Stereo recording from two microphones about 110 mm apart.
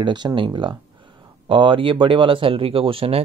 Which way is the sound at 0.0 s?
45° right (ahead or behind).